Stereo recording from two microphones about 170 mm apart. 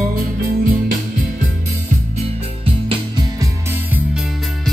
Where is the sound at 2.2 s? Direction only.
35° right (ahead or behind).